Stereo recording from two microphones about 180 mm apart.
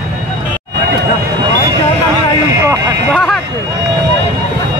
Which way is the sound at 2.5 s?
15° right (ahead or behind).